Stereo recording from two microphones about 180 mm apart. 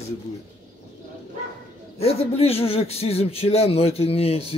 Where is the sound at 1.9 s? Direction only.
35° left (ahead or behind).